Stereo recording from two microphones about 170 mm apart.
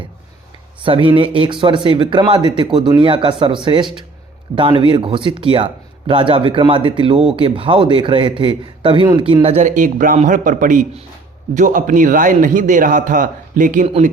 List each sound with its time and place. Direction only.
0.9 s a man's voice: 30° right (ahead or behind); by 13.8 s 50° right (ahead or behind)
13.8 s speech: 35° right (ahead or behind)